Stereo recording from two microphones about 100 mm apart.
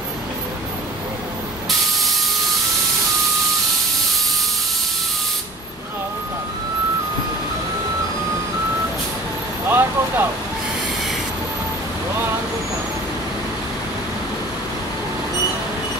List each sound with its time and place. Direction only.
9.7 s vehicle: 20° right (ahead or behind)